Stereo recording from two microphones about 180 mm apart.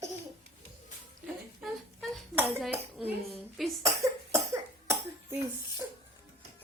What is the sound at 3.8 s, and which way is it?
Cough, 15° right (ahead or behind).